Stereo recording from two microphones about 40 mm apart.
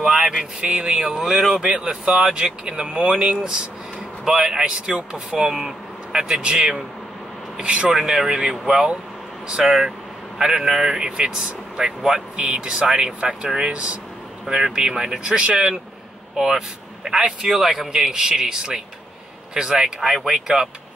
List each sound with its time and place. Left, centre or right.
0.2 s a man's voice: centre
0.9 s a man's voice: centre
5.5 s speech: centre
7.6 s a man's voice: right
15.5 s a man's voice: centre